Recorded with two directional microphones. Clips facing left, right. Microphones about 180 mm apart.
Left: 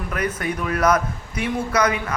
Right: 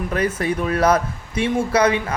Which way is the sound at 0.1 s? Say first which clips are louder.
Right 3 dB; 30° right (ahead or behind).